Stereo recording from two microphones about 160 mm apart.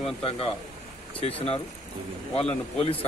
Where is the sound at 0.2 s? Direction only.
35° left (ahead or behind).